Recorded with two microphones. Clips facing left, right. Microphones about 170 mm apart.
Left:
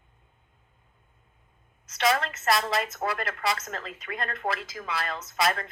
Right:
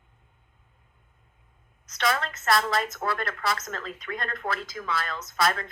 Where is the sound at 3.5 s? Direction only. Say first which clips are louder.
Right 1 dB; 30° left (ahead or behind).